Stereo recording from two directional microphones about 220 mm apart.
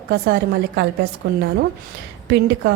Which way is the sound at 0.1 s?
50° right (ahead or behind).